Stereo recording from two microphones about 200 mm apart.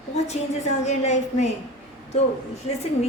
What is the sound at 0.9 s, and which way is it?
Speech, 35° left (ahead or behind).